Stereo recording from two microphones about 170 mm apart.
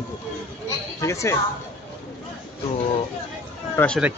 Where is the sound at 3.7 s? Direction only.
5° left (ahead or behind).